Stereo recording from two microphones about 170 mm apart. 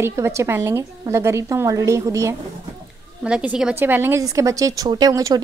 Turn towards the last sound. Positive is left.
turn(degrees=-20)  # may be behind; listen again after turning